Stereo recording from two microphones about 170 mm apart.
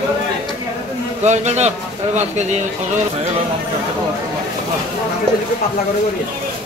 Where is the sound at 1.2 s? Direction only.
40° right (ahead or behind).